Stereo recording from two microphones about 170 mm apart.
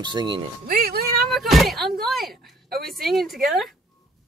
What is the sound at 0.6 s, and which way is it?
Speech, 65° right (ahead or behind).